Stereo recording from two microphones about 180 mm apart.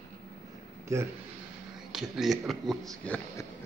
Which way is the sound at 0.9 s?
15° right (ahead or behind).